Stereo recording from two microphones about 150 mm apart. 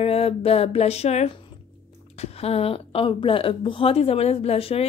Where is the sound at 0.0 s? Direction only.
40° left (ahead or behind).